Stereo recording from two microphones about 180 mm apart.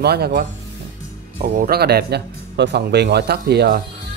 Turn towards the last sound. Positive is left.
turn(degrees=-65)  # may be behind; listen again after turning